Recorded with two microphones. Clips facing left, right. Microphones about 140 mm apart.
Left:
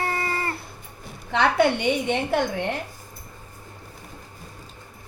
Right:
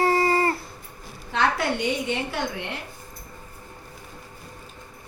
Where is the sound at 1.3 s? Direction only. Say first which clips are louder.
Left 4 dB; 65° left (ahead or behind).